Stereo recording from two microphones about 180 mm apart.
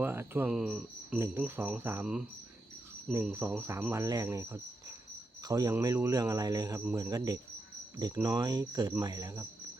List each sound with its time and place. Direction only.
0.0 s speech: 10° right (ahead or behind)